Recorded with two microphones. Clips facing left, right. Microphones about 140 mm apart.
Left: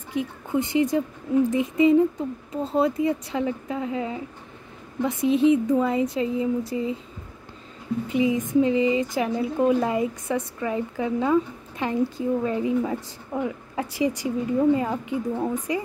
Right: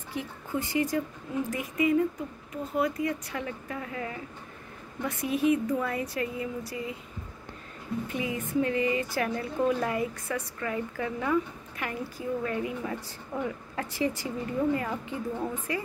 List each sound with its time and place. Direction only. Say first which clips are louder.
0.1 s speech: left 7 dB; 20° left (ahead or behind)
8.1 s a woman's voice: left 11 dB; 20° left (ahead or behind)